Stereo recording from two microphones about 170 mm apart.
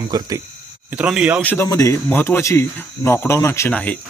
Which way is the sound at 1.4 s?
10° left (ahead or behind).